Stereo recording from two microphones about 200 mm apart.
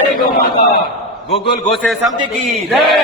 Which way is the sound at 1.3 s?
30° left (ahead or behind).